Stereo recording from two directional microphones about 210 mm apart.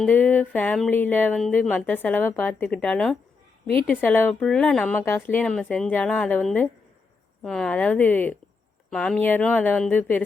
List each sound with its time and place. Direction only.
0.0 s speech: 10° left (ahead or behind)